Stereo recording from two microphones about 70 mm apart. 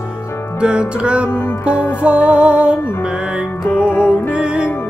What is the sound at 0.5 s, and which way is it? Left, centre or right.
Music, centre.